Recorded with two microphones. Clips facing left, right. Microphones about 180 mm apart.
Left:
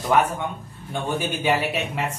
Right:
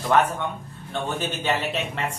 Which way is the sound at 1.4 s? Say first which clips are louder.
Left 3 dB; 10° left (ahead or behind).